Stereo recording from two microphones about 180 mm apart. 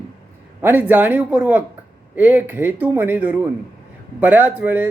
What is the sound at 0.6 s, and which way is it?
A man's voice, 10° right (ahead or behind).